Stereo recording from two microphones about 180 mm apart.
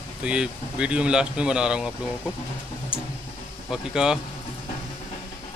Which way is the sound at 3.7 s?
5° right (ahead or behind).